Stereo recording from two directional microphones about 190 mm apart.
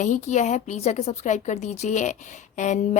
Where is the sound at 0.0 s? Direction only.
40° left (ahead or behind).